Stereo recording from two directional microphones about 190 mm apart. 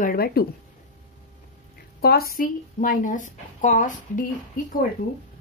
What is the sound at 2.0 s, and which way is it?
Speech, 55° left (ahead or behind).